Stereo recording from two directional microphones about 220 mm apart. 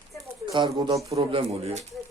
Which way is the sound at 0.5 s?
20° right (ahead or behind).